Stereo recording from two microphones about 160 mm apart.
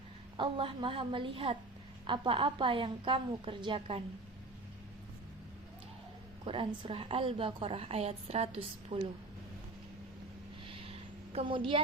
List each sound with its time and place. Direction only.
0.3 s a woman's voice: 30° right (ahead or behind)
6.4 s a woman's voice: 35° right (ahead or behind)
10.8 s a sound: 35° right (ahead or behind)